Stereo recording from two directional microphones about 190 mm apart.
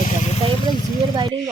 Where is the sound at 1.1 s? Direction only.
25° right (ahead or behind).